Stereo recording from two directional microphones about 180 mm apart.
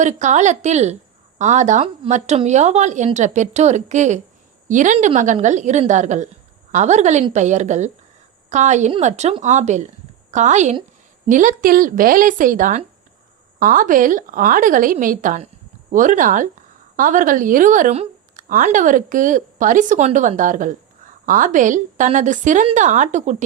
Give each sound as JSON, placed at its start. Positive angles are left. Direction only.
{"t": 0.0, "sound": "a woman's voice", "side_deg": -40}